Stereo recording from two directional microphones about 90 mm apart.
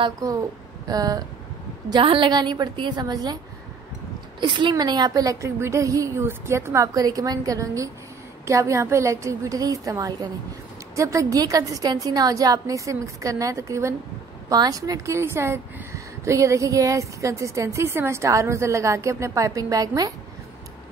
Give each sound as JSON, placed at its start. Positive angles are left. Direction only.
{"t": 0.8, "sound": "a woman's voice", "side_deg": -45}
{"t": 1.9, "sound": "a woman's voice", "side_deg": -65}
{"t": 4.4, "sound": "speech", "side_deg": -60}